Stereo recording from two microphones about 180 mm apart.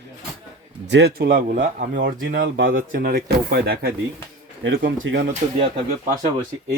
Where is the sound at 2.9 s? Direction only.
55° right (ahead or behind).